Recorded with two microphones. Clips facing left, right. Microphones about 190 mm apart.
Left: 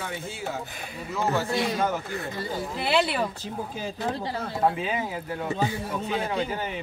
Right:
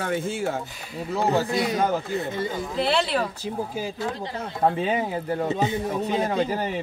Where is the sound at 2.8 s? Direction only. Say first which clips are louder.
Right 2 dB; 5° left (ahead or behind).